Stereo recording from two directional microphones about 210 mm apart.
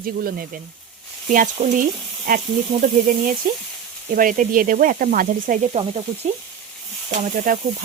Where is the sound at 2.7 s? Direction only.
30° right (ahead or behind).